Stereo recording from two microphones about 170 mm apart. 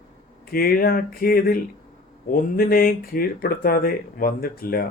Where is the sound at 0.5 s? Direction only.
60° left (ahead or behind).